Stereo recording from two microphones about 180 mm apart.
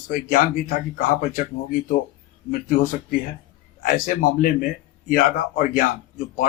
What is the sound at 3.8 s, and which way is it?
Speech, 50° left (ahead or behind).